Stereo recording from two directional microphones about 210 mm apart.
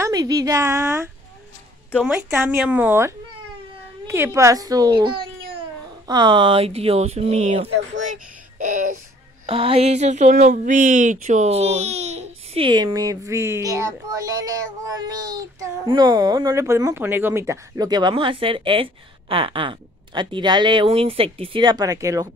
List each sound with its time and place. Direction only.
0.0 s speech: 15° right (ahead or behind)
4.1 s speech: 10° right (ahead or behind); by 8.9 s 40° right (ahead or behind)
9.5 s speech: 30° right (ahead or behind)